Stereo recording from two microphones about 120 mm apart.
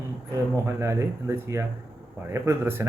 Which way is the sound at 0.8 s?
25° right (ahead or behind).